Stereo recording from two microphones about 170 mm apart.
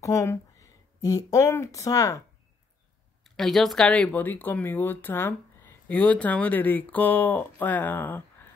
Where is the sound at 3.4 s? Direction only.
Centre (ahead or behind).